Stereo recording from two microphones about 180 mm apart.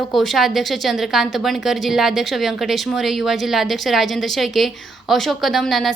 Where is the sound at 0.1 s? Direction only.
Centre (ahead or behind).